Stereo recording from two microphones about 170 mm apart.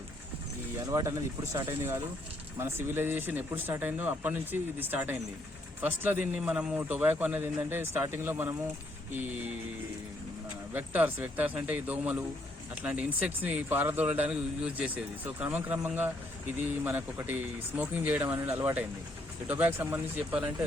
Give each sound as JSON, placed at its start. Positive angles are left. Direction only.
{"t": 0.9, "sound": "a man's voice", "side_deg": -25}
{"t": 10.8, "sound": "a man's voice", "side_deg": -10}